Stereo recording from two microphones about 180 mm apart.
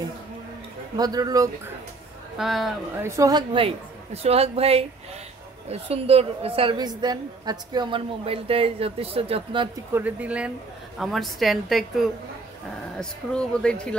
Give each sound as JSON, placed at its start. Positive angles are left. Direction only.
{"t": 0.9, "sound": "speech", "side_deg": -20}
{"t": 2.3, "sound": "a woman's voice", "side_deg": 0}
{"t": 3.0, "sound": "a woman's voice", "side_deg": -15}
{"t": 9.9, "sound": "a woman's voice", "side_deg": -10}